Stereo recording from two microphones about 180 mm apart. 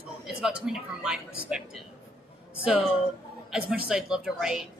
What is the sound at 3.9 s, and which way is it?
Speech, 5° right (ahead or behind).